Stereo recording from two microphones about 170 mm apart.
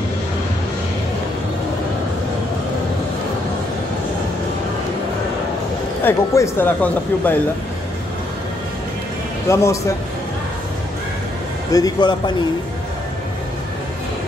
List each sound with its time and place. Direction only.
6.0 s speech: 15° left (ahead or behind)
9.5 s speech: 20° left (ahead or behind)
11.7 s a man's voice: 25° left (ahead or behind)